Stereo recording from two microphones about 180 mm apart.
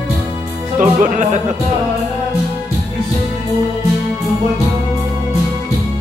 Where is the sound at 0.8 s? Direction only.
45° right (ahead or behind).